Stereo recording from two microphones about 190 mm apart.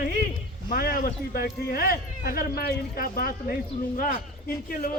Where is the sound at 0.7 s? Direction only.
50° left (ahead or behind).